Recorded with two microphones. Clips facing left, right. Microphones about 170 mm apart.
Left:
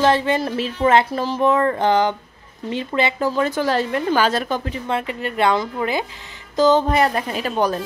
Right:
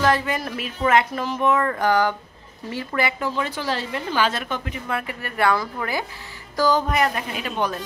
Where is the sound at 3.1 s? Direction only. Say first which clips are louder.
Left 6 dB; 40° left (ahead or behind).